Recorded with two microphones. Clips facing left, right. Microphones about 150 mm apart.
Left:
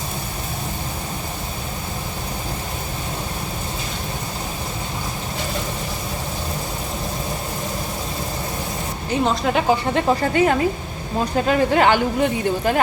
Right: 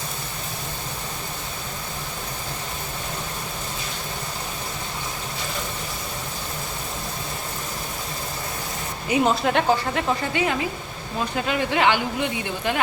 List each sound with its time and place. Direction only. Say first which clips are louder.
9.0 s speech: even; 5° right (ahead or behind)
9.9 s speech: left 6 dB; 45° left (ahead or behind)